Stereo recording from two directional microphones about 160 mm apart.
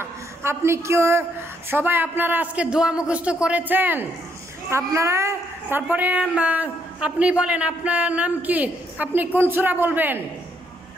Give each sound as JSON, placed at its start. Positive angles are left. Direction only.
{"t": 0.0, "sound": "a woman's voice", "side_deg": -15}